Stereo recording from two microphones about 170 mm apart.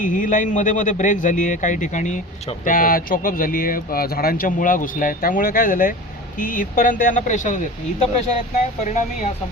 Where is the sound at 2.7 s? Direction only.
55° left (ahead or behind).